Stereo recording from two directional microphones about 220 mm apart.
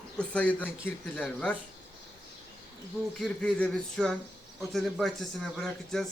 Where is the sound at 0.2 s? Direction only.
5° left (ahead or behind).